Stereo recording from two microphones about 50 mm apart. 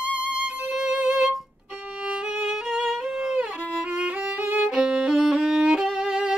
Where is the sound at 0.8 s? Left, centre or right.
Centre.